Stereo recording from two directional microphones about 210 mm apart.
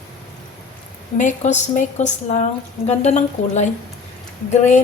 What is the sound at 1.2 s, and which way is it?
A woman's voice, 35° left (ahead or behind).